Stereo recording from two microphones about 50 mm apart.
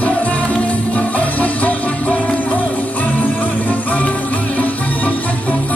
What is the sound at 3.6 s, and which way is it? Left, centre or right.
Music, left.